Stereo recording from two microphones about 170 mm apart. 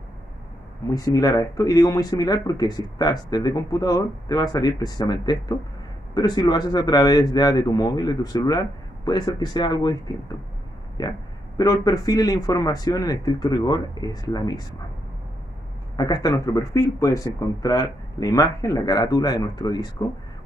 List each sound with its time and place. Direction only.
0.8 s speech: 20° left (ahead or behind)
16.0 s speech: 25° left (ahead or behind)